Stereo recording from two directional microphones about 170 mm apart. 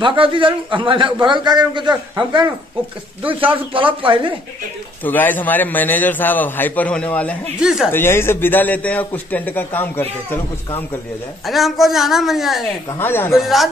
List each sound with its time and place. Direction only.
0.0 s a man's voice: 30° right (ahead or behind)
3.7 s a man's voice: 30° right (ahead or behind)
5.0 s a man's voice: 10° left (ahead or behind)
7.6 s a woman's voice: 5° right (ahead or behind)
7.9 s a man's voice: 15° left (ahead or behind)
11.4 s a woman's voice: centre (ahead or behind)
13.0 s a man's voice: 10° left (ahead or behind)
13.4 s a woman's voice: centre (ahead or behind)